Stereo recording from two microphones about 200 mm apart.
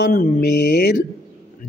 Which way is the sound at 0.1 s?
50° left (ahead or behind).